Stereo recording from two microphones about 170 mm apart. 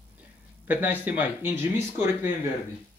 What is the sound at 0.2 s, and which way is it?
Speech, 10° right (ahead or behind).